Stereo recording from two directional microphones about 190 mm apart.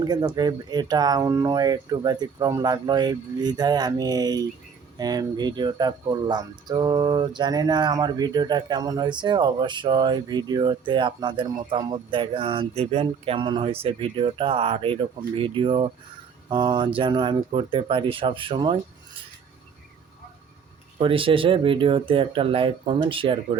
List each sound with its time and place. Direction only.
0.0 s speech: 20° right (ahead or behind)
21.0 s speech: 30° right (ahead or behind)